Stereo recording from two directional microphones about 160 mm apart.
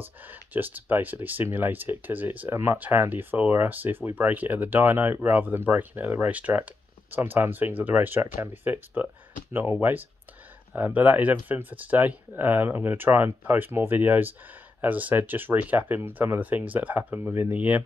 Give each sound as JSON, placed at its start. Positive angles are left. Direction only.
{"t": 0.0, "sound": "speech", "side_deg": -10}